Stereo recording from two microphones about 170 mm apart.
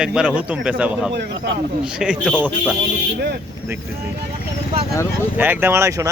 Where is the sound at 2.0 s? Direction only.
5° right (ahead or behind).